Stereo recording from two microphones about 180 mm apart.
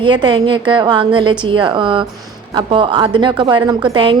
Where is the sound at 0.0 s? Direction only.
25° right (ahead or behind).